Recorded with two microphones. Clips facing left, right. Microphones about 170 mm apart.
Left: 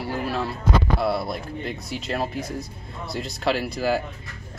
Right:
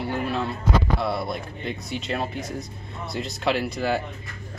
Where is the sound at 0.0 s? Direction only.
5° left (ahead or behind).